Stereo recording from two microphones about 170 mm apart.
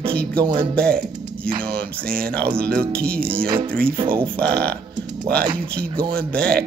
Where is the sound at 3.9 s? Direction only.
30° right (ahead or behind).